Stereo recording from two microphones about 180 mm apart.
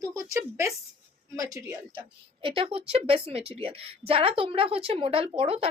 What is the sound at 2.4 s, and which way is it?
A woman's voice, 30° right (ahead or behind).